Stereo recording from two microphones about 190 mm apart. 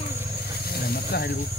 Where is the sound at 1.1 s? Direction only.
55° left (ahead or behind).